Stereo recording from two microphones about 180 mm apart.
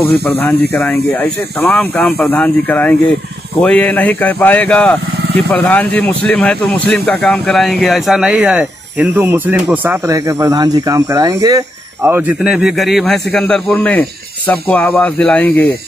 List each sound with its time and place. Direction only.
0.0 s speech: 10° left (ahead or behind)